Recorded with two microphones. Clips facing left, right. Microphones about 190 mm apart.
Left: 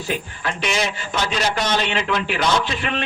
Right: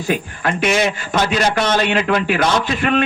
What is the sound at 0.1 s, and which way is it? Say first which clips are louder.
A man's voice: right 7 dB; 55° right (ahead or behind).